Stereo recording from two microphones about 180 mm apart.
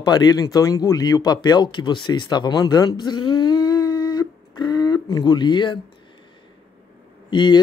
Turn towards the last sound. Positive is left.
turn(degrees=25)  # may be behind; listen again after turning